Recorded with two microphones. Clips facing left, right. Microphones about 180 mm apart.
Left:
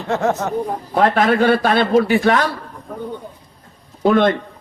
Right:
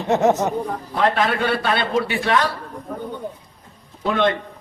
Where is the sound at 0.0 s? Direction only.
20° right (ahead or behind).